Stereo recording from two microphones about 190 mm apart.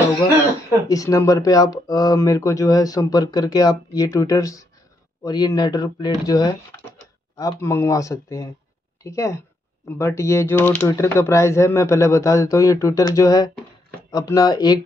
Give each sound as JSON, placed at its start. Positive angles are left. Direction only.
{"t": 0.8, "sound": "speech", "side_deg": 20}